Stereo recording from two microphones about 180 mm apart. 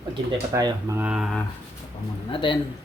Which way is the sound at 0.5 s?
20° right (ahead or behind).